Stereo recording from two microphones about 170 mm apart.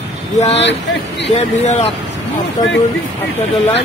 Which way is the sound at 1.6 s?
40° left (ahead or behind).